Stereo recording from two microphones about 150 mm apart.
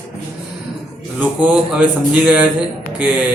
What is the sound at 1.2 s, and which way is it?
A man's voice, 10° right (ahead or behind).